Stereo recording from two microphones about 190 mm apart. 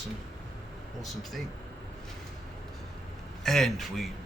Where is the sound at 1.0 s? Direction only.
Centre (ahead or behind).